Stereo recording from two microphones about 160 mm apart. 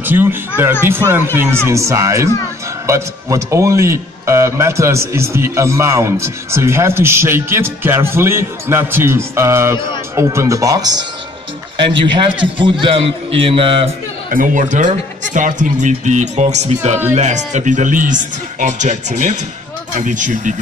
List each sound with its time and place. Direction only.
0.0 s a man's voice: 15° right (ahead or behind); by 13.9 s 35° right (ahead or behind)
14.3 s speech: 55° right (ahead or behind)